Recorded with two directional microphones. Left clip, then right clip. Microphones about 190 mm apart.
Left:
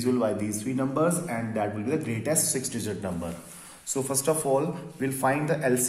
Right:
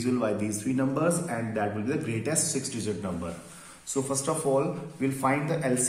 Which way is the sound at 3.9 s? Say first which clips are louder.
Even; 40° left (ahead or behind).